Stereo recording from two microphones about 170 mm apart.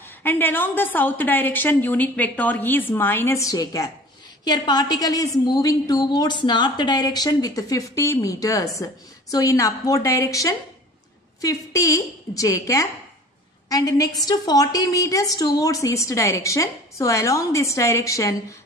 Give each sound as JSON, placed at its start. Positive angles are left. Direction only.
{"t": 0.0, "sound": "a woman's voice", "side_deg": 10}